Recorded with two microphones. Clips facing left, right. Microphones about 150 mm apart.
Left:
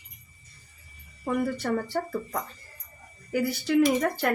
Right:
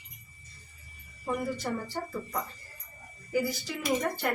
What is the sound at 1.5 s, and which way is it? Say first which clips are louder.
Speech: left 6 dB; 65° left (ahead or behind).